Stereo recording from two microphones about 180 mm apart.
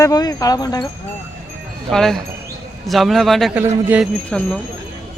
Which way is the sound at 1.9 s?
Centre (ahead or behind).